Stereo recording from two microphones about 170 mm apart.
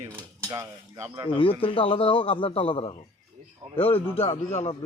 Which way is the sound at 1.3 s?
30° left (ahead or behind).